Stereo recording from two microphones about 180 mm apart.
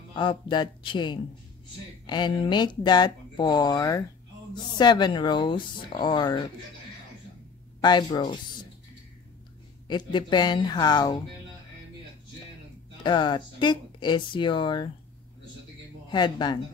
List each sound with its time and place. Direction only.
0.1 s speech: 25° left (ahead or behind)
7.8 s speech: 25° left (ahead or behind)
9.8 s speech: 25° left (ahead or behind)
13.0 s speech: 25° left (ahead or behind)
16.1 s speech: 25° left (ahead or behind)